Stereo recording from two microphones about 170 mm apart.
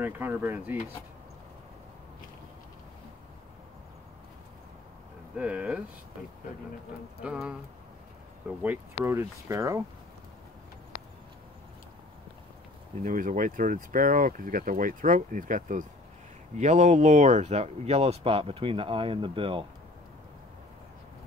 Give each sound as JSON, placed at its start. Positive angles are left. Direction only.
{"t": 0.0, "sound": "speech", "side_deg": -10}
{"t": 5.3, "sound": "speech", "side_deg": -10}
{"t": 7.2, "sound": "speech", "side_deg": -5}
{"t": 13.0, "sound": "speech", "side_deg": -50}